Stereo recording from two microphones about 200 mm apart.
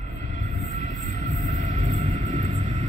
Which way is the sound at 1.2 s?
40° right (ahead or behind).